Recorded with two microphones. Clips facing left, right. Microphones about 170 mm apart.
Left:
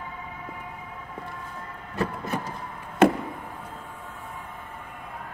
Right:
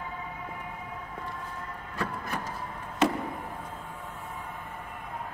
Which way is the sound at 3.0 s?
55° left (ahead or behind).